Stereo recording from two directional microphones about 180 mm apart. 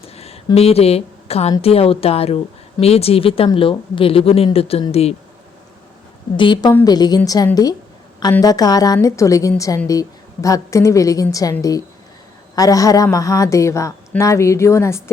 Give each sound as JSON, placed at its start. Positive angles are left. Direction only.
{"t": 0.0, "sound": "a sound", "side_deg": 35}
{"t": 0.5, "sound": "a woman's voice", "side_deg": 35}
{"t": 6.3, "sound": "a woman's voice", "side_deg": 25}